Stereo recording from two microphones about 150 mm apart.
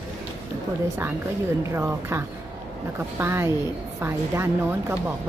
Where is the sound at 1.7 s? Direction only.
15° right (ahead or behind).